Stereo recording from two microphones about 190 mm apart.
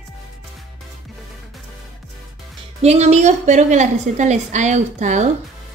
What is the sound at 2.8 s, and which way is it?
Speech, 35° right (ahead or behind).